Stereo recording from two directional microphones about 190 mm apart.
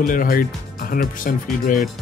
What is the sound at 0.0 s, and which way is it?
Speech, 45° left (ahead or behind).